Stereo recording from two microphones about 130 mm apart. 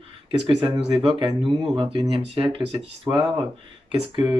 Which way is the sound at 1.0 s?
40° right (ahead or behind).